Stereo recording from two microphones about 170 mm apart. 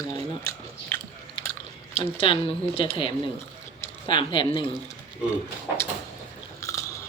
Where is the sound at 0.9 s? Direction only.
10° left (ahead or behind).